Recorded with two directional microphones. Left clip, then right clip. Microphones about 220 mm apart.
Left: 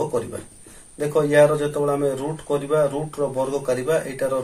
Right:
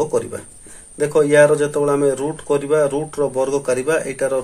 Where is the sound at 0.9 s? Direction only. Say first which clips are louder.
Right 4 dB; 45° right (ahead or behind).